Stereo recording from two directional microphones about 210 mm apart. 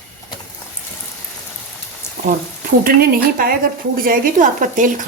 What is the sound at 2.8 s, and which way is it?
A woman's voice, 45° right (ahead or behind).